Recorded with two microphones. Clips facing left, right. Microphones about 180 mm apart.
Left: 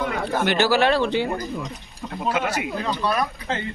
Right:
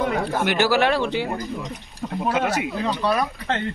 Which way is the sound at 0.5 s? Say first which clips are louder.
Left 1 dB; 15° right (ahead or behind).